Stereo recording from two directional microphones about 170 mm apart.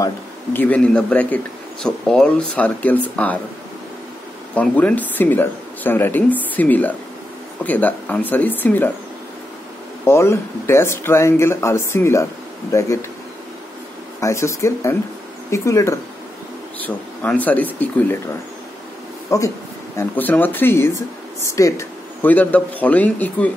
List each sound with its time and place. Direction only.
0.0 s a man's voice: 10° left (ahead or behind)
4.6 s a man's voice: 10° left (ahead or behind)
10.0 s a man's voice: 15° left (ahead or behind)
14.2 s a man's voice: 15° left (ahead or behind)
19.3 s a man's voice: 20° left (ahead or behind)